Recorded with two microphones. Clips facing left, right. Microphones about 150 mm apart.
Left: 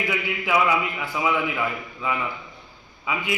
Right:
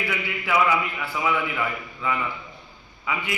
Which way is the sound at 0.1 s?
15° left (ahead or behind).